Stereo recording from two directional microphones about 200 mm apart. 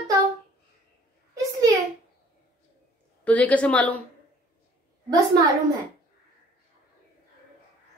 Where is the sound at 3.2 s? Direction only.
5° left (ahead or behind).